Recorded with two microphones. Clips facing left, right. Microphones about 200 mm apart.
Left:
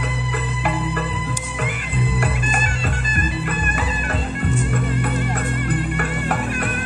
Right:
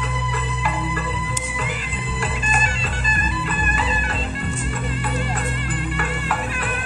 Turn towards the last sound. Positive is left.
turn(degrees=55)  # may be behind; listen again after turning